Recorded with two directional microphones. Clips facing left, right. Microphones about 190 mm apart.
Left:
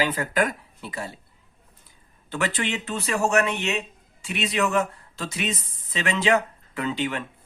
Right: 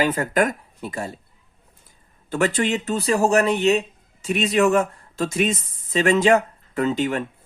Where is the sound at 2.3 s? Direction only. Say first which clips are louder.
Right 6 dB; 45° right (ahead or behind).